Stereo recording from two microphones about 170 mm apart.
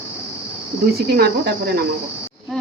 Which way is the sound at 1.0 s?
65° right (ahead or behind).